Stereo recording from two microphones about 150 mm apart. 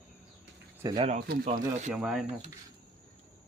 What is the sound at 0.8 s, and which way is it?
Speech, 25° right (ahead or behind).